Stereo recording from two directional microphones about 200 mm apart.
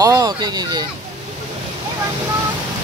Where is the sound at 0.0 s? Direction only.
20° right (ahead or behind).